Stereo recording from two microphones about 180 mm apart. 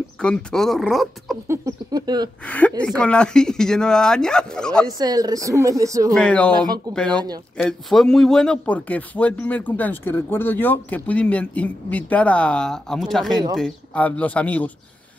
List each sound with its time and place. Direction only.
0.2 s speech: 5° left (ahead or behind)
1.5 s a woman's voice: 20° right (ahead or behind)
2.4 s speech: 5° left (ahead or behind)
4.8 s a woman's voice: 20° right (ahead or behind)
6.1 s speech: 5° left (ahead or behind)